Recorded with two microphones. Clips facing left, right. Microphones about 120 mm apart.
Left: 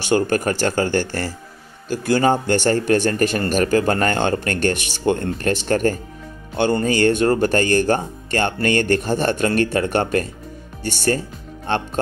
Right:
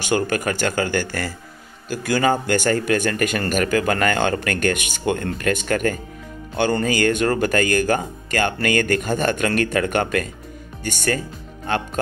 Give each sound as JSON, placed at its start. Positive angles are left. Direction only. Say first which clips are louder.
{"t": 0.1, "sound": "speech", "louder": "left 3 dB", "side_deg": 35}